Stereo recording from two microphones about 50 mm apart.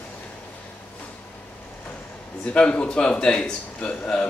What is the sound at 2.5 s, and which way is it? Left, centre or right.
Speech, left.